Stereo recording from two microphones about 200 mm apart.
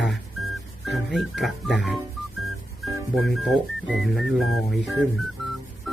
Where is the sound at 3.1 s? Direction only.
Centre (ahead or behind).